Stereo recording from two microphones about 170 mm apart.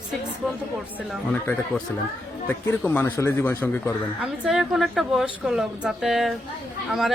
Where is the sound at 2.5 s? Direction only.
10° left (ahead or behind).